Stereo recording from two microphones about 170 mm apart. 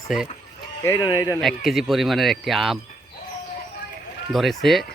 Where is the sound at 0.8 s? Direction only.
20° left (ahead or behind).